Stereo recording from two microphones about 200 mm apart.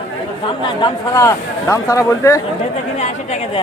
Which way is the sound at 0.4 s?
20° left (ahead or behind).